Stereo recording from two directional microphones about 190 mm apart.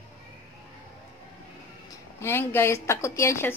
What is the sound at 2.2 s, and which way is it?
A woman's voice, 10° left (ahead or behind).